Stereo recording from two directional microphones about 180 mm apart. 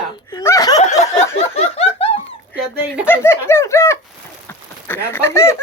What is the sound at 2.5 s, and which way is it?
Dog, 5° right (ahead or behind).